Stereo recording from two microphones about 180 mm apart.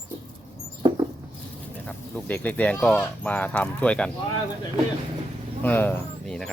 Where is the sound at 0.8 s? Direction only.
25° right (ahead or behind).